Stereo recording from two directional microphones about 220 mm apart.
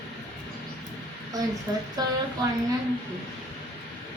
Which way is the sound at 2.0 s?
15° right (ahead or behind).